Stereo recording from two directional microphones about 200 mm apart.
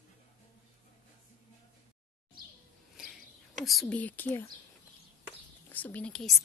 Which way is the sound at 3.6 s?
Centre (ahead or behind).